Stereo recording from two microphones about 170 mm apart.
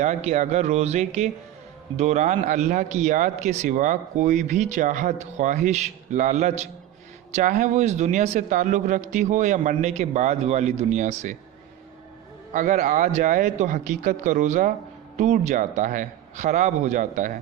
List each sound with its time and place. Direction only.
0.0 s speech: 45° right (ahead or behind)
12.5 s speech: 50° right (ahead or behind)